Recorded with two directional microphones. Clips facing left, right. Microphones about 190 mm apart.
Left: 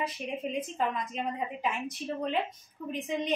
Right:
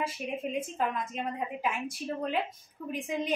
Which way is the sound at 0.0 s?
5° right (ahead or behind).